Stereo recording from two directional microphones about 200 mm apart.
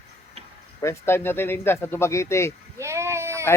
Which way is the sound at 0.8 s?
15° left (ahead or behind).